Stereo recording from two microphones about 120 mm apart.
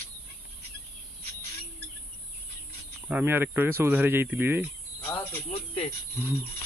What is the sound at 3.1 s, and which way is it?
Speech, 15° right (ahead or behind).